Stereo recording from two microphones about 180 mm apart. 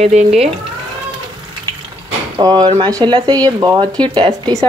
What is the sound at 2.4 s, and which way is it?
A woman's voice, 25° right (ahead or behind).